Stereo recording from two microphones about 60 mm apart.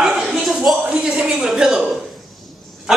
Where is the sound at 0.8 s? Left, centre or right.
Centre.